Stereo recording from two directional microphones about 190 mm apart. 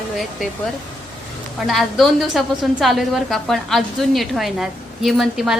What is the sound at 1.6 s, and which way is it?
A woman's voice, centre (ahead or behind).